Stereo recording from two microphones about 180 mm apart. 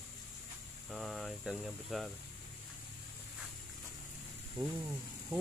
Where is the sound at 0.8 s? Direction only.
Centre (ahead or behind).